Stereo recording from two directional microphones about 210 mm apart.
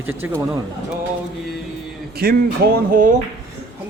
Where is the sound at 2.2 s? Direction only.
45° right (ahead or behind).